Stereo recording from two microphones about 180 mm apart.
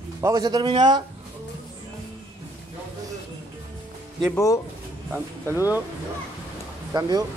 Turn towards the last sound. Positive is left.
turn(degrees=-20)  # may be behind; listen again after turning